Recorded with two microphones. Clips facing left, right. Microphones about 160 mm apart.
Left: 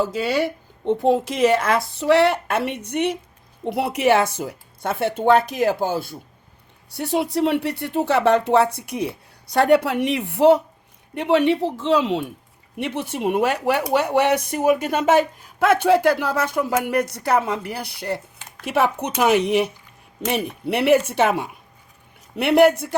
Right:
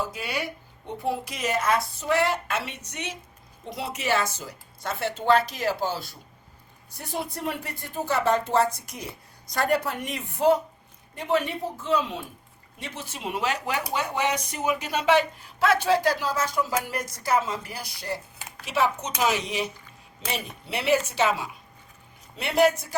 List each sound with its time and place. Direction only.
1.6 s speech: 85° left; by 6.1 s 50° left (ahead or behind)
6.9 s speech: 80° left
12.7 s speech: 65° left (ahead or behind)